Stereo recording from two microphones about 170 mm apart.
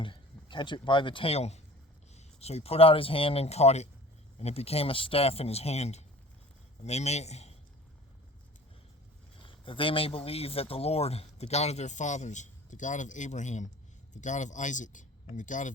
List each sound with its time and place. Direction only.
0.0 s speech: 30° left (ahead or behind)
9.4 s speech: 30° left (ahead or behind); by 15.7 s 50° left (ahead or behind)